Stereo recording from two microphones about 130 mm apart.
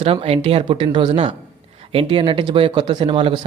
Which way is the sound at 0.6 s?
40° right (ahead or behind).